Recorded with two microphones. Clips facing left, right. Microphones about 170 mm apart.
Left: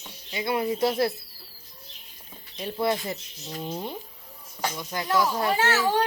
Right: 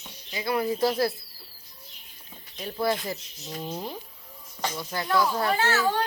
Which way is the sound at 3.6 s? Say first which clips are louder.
Left 1 dB; centre (ahead or behind).